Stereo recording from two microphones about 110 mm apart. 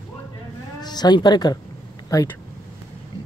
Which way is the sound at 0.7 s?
40° left (ahead or behind).